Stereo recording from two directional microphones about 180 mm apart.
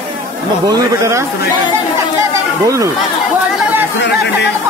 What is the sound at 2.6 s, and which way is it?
Speech, 20° right (ahead or behind).